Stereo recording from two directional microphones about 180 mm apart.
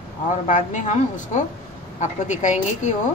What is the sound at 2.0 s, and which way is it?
Speech, 40° left (ahead or behind).